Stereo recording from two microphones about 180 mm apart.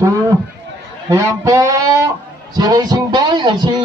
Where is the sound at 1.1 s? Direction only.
15° right (ahead or behind).